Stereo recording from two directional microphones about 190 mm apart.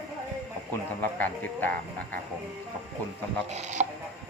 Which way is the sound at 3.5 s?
35° right (ahead or behind).